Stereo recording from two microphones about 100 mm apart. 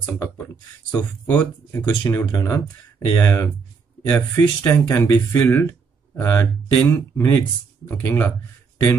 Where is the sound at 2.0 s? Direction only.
30° left (ahead or behind).